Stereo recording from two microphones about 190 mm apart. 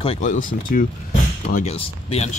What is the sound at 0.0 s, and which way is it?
Speech, 35° left (ahead or behind).